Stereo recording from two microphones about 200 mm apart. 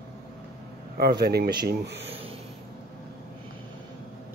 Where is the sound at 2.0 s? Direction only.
30° right (ahead or behind).